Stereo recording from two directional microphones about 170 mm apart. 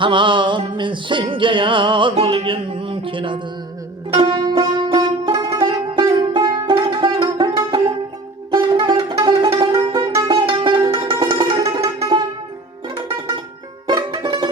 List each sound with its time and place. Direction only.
0.0 s music: 30° right (ahead or behind)
13.8 s music: 25° right (ahead or behind)